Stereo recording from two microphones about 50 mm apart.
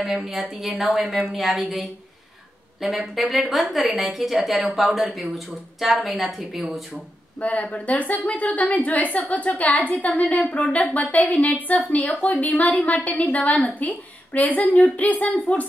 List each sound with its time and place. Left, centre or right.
0.0 s a woman's voice: centre
7.3 s a woman's voice: left